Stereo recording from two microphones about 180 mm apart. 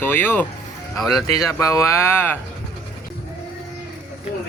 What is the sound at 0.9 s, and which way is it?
Speech, centre (ahead or behind).